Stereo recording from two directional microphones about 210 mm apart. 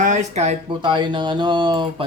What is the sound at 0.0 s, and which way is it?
Speech, 35° right (ahead or behind).